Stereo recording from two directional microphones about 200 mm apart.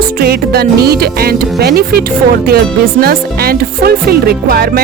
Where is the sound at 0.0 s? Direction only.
50° right (ahead or behind).